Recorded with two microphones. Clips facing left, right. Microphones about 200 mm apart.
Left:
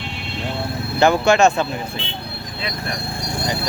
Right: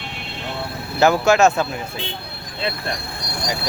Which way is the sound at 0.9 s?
5° right (ahead or behind).